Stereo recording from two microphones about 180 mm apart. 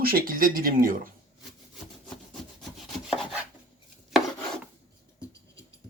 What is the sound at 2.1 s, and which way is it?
Rub, centre (ahead or behind).